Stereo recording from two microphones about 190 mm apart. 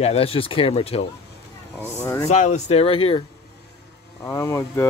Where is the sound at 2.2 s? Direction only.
35° left (ahead or behind).